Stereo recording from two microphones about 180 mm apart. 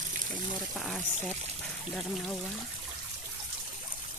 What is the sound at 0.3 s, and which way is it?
Speech, centre (ahead or behind).